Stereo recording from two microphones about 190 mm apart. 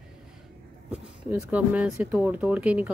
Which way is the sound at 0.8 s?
5° right (ahead or behind).